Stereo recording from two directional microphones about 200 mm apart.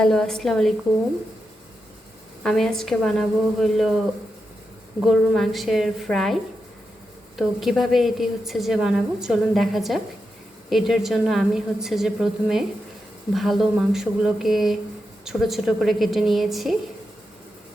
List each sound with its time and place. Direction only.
0.0 s a woman's voice: centre (ahead or behind)
2.4 s a woman's voice: centre (ahead or behind)
5.0 s a woman's voice: centre (ahead or behind)